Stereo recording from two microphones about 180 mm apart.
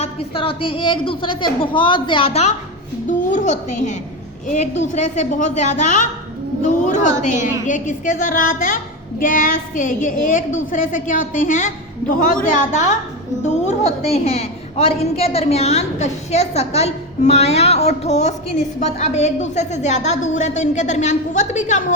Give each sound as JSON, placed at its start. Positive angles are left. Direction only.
{"t": 0.0, "sound": "a woman's voice", "side_deg": 30}
{"t": 6.6, "sound": "child singing", "side_deg": 45}
{"t": 13.4, "sound": "a woman's voice", "side_deg": 40}